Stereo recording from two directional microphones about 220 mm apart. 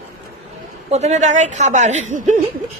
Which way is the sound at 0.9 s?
30° right (ahead or behind).